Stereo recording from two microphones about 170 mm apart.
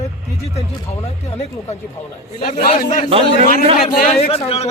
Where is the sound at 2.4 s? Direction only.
55° left (ahead or behind).